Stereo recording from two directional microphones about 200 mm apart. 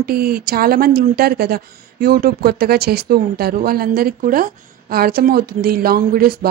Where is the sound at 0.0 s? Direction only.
50° right (ahead or behind).